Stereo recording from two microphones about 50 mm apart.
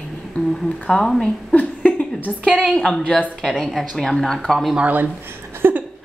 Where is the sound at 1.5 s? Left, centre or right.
Left.